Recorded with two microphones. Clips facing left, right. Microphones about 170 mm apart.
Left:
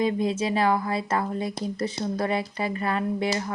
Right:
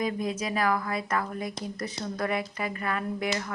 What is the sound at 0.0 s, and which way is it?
Speech, 30° left (ahead or behind).